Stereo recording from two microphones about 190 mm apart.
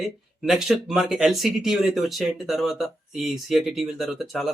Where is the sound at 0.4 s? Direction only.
Centre (ahead or behind).